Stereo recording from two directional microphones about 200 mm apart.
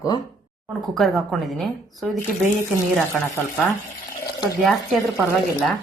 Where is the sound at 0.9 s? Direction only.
Centre (ahead or behind).